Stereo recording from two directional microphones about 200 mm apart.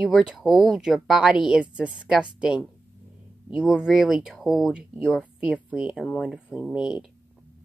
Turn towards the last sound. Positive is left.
turn(degrees=-5)  # may be behind; listen again after turning